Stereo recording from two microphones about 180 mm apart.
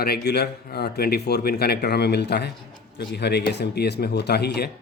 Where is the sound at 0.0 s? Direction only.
60° left (ahead or behind).